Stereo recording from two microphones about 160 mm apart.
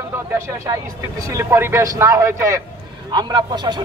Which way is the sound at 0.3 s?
20° right (ahead or behind).